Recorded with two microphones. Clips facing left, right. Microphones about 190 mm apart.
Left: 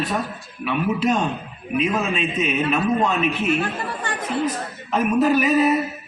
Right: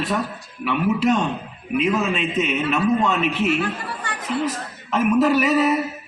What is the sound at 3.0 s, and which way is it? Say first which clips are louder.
Speech: right 1 dB; 80° right.